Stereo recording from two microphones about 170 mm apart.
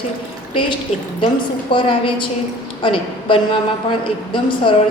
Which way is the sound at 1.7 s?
30° left (ahead or behind).